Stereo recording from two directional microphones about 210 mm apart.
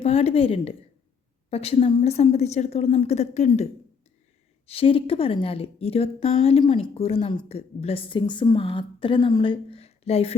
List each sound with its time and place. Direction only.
0.0 s a woman's voice: 30° left (ahead or behind)